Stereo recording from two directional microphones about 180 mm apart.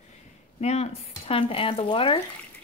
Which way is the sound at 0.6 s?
35° left (ahead or behind).